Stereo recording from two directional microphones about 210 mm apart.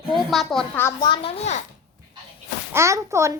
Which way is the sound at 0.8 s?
20° left (ahead or behind).